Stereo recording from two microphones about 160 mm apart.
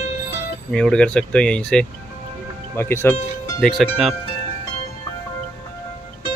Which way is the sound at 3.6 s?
Centre (ahead or behind).